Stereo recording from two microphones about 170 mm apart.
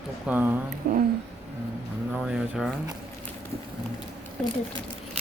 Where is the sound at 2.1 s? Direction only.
5° right (ahead or behind).